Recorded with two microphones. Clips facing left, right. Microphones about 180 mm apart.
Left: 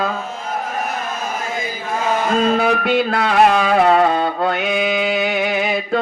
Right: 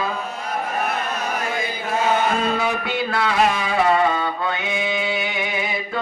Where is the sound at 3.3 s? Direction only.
65° left (ahead or behind); by 5.8 s 90° left.